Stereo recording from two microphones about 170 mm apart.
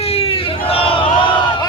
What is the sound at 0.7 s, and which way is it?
Battle cry, 35° left (ahead or behind).